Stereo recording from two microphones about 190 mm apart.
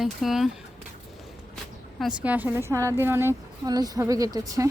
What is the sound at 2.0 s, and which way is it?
Speech, 5° right (ahead or behind).